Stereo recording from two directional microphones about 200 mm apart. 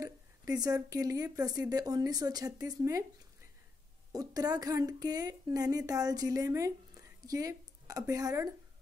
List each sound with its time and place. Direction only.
0.0 s a woman's voice: 20° right (ahead or behind)
4.1 s a woman's voice: 20° right (ahead or behind)